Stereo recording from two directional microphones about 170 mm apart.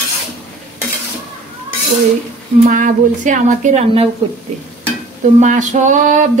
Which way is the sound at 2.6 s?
50° right (ahead or behind).